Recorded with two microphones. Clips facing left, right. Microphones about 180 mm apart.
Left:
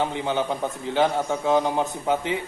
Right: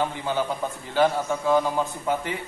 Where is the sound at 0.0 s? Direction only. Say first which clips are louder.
Left 1 dB; 20° left (ahead or behind).